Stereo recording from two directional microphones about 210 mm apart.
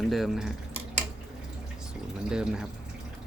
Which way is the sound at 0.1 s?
Centre (ahead or behind).